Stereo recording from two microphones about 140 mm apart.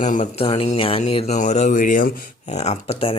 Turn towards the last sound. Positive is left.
turn(degrees=45)  # may be behind; listen again after turning